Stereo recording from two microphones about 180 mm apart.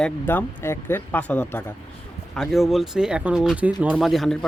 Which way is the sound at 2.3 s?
Centre (ahead or behind).